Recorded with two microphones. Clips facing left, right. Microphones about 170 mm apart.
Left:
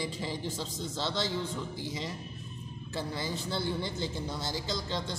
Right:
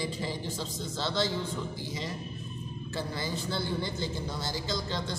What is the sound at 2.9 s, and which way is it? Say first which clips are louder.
A man's voice: even; 20° left (ahead or behind).